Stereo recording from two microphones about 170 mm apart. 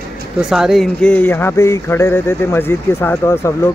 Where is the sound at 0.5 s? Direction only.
Centre (ahead or behind); by 3.7 s 15° left (ahead or behind).